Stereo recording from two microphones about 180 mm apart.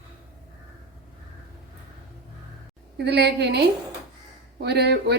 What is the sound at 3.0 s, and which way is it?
Speech, 65° right (ahead or behind).